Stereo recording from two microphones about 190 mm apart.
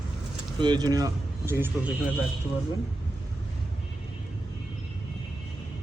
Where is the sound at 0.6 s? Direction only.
20° right (ahead or behind).